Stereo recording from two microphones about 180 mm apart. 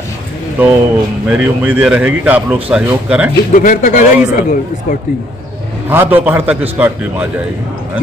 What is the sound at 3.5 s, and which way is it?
Speech, 45° left (ahead or behind).